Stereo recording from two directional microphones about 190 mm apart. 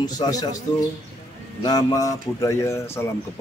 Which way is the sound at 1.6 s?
20° left (ahead or behind).